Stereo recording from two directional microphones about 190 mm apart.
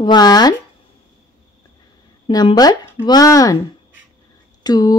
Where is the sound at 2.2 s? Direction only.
25° left (ahead or behind).